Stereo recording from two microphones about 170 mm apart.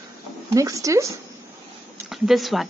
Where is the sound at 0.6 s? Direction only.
20° right (ahead or behind).